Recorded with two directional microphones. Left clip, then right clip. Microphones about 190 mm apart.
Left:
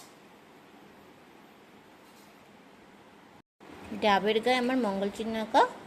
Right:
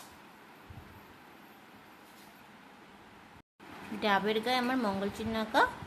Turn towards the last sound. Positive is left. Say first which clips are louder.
# left 3 dB
turn(degrees=10)  # may be behind; listen again after turning